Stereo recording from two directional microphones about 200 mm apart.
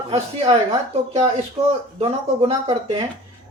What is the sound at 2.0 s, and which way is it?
Speech, 30° right (ahead or behind).